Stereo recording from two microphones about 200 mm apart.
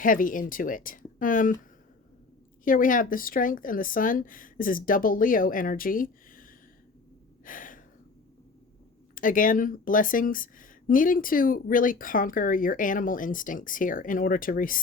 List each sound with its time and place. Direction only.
0.0 s speech: 40° left (ahead or behind)
2.6 s speech: 45° left (ahead or behind)
7.4 s gasp: 40° left (ahead or behind)
9.1 s speech: 40° left (ahead or behind)